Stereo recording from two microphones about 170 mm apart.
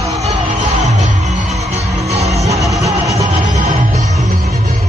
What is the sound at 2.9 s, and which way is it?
Music, 20° right (ahead or behind).